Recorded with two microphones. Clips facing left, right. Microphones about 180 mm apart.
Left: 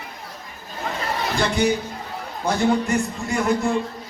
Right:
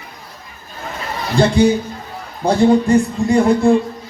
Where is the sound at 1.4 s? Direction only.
30° right (ahead or behind).